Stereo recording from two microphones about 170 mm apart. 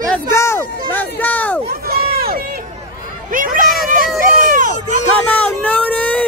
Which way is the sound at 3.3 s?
55° right (ahead or behind).